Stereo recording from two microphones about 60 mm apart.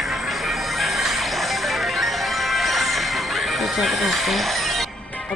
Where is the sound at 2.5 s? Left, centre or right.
Centre.